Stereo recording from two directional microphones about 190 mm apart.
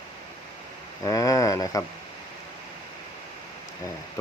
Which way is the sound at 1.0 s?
15° left (ahead or behind).